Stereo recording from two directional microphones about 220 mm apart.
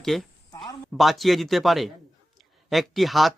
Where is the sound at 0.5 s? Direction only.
15° left (ahead or behind).